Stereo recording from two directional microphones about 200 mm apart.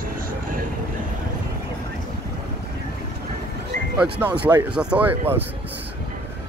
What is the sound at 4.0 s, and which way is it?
Speech, 10° right (ahead or behind).